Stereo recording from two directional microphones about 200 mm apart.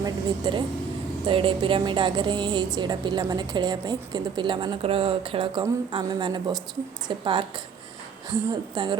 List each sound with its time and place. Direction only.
0.0 s a woman's voice: 20° right (ahead or behind)